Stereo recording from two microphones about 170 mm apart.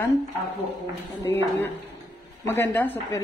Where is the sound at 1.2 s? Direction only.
15° left (ahead or behind).